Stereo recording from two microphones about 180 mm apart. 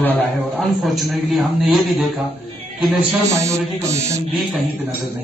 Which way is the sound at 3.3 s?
15° right (ahead or behind).